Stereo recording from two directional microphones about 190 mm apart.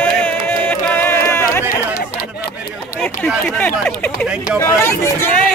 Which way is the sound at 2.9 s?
5° left (ahead or behind).